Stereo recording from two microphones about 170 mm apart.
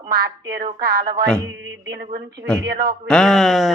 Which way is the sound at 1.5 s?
90° right.